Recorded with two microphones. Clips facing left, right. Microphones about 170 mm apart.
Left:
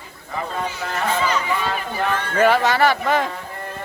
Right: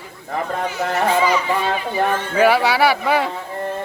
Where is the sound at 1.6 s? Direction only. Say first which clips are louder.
Right 4 dB; 45° right (ahead or behind).